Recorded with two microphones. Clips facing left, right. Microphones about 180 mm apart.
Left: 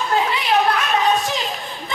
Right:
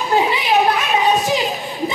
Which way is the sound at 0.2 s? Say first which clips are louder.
Right 2 dB; 15° right (ahead or behind).